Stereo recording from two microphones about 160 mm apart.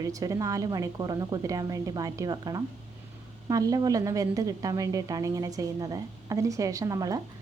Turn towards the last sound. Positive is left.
turn(degrees=-20)  # may be behind; listen again after turning